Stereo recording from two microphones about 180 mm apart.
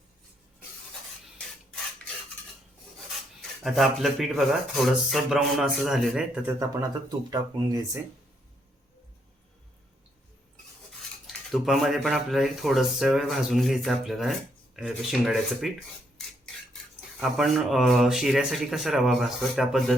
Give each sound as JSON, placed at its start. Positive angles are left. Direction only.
{"t": 3.6, "sound": "speech", "side_deg": 0}
{"t": 7.3, "sound": "speech", "side_deg": -20}
{"t": 11.3, "sound": "speech", "side_deg": 0}
{"t": 17.2, "sound": "speech", "side_deg": 0}